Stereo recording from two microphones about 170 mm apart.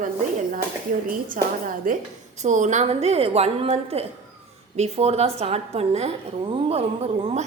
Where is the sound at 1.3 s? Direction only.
55° right (ahead or behind).